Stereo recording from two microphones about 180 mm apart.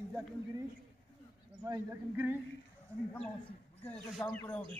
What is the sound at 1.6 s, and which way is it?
Speech, 15° right (ahead or behind).